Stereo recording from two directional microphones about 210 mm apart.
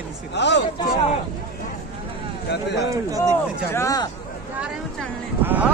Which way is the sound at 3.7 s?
15° left (ahead or behind).